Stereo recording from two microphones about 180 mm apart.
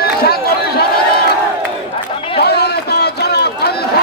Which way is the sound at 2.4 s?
65° left (ahead or behind).